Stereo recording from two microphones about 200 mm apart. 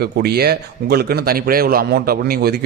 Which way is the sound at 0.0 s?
55° right (ahead or behind).